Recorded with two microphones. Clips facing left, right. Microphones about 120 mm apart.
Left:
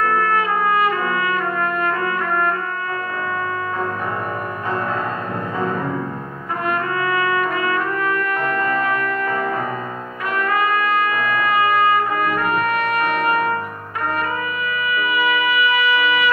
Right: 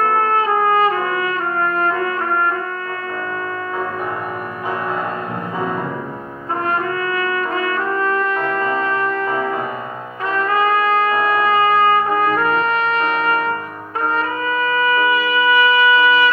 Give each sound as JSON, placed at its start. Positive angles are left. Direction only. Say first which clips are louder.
{"t": 0.0, "sound": "trumpet", "louder": "right 2 dB", "side_deg": -30}
{"t": 6.6, "sound": "brass instrument", "louder": "even", "side_deg": -30}
{"t": 15.0, "sound": "music", "louder": "right 3 dB", "side_deg": -30}